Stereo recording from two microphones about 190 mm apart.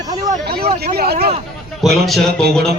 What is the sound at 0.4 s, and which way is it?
Speech, 55° right (ahead or behind).